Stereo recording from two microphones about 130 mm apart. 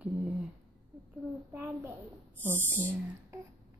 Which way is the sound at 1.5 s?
20° right (ahead or behind).